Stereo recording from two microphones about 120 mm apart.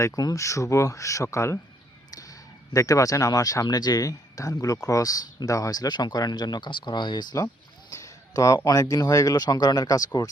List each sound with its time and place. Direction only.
0.2 s speech: 30° left (ahead or behind)
7.4 s speech: 25° left (ahead or behind)